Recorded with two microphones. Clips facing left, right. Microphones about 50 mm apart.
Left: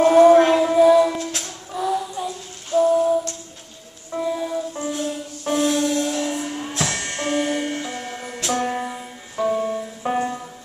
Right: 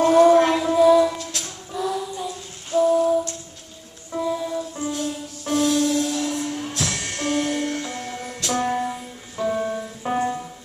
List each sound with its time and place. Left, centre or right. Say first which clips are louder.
0.0 s music: left 2 dB; centre